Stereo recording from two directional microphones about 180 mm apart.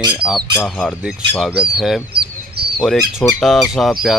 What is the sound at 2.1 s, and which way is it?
Bird, 60° right (ahead or behind).